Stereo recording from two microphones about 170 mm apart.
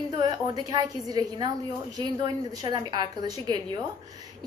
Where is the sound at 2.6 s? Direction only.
25° right (ahead or behind).